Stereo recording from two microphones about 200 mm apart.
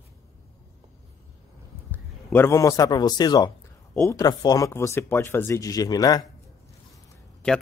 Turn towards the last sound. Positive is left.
turn(degrees=5)  # may be behind; listen again after turning